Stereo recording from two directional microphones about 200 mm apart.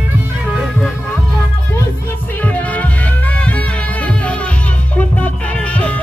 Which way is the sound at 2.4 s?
10° left (ahead or behind).